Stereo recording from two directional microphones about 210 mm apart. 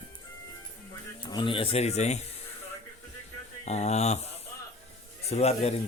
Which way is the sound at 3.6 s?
30° left (ahead or behind).